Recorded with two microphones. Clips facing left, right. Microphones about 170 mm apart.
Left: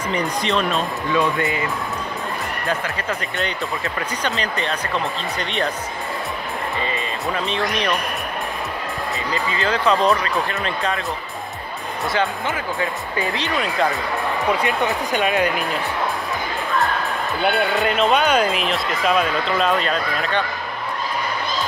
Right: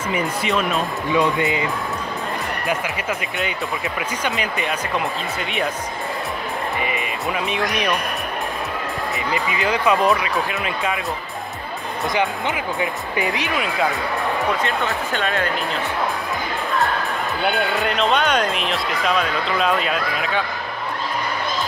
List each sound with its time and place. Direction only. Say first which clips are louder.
0.1 s speech: even; 5° right (ahead or behind)
1.1 s speech: right 1 dB; 20° right (ahead or behind)
6.8 s speech: even; 15° right (ahead or behind)
9.3 s speech: even; 15° right (ahead or behind)
10.0 s speech: even; centre (ahead or behind)
12.1 s speech: even; 15° right (ahead or behind)
13.6 s speech: left 2 dB; centre (ahead or behind)
14.6 s speech: left 2 dB; 15° left (ahead or behind)
17.5 s speech: left 2 dB; centre (ahead or behind)